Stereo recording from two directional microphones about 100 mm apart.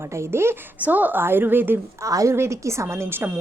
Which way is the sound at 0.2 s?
25° right (ahead or behind).